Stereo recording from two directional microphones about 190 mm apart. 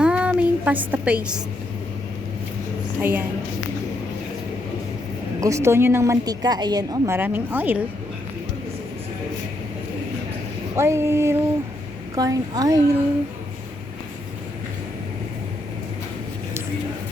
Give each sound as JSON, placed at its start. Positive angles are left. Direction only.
{"t": 0.0, "sound": "a sound", "side_deg": -5}
{"t": 3.0, "sound": "a woman's voice", "side_deg": -10}
{"t": 5.4, "sound": "a woman's voice", "side_deg": -15}
{"t": 10.8, "sound": "a woman's voice", "side_deg": -15}